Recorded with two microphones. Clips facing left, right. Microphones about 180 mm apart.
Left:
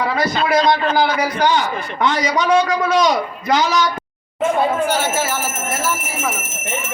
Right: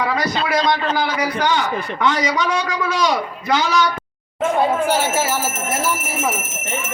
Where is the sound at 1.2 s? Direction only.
35° left (ahead or behind).